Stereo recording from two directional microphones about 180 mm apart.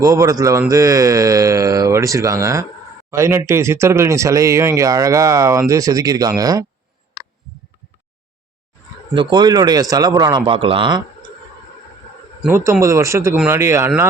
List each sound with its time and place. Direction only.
0.0 s speech: 15° right (ahead or behind)
9.1 s a man's voice: 25° right (ahead or behind)
12.5 s speech: 15° right (ahead or behind)